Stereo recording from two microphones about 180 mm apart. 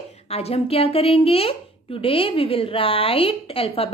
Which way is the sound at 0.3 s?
35° left (ahead or behind).